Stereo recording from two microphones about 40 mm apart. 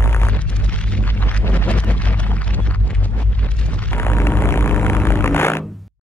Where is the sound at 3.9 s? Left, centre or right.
Left.